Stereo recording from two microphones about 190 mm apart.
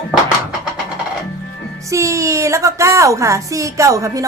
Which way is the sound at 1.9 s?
15° right (ahead or behind).